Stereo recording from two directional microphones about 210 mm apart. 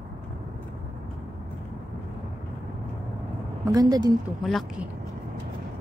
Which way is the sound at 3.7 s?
20° right (ahead or behind).